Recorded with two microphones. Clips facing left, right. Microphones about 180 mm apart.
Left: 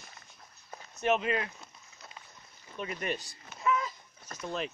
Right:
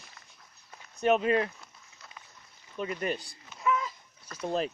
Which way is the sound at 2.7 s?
30° right (ahead or behind).